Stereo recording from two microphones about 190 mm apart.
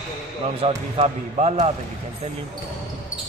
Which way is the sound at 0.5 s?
30° right (ahead or behind).